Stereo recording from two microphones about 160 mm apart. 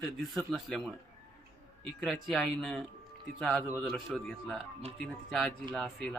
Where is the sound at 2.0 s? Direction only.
Centre (ahead or behind).